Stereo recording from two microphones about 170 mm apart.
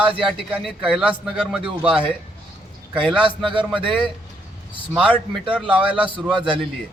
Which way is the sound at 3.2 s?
30° right (ahead or behind).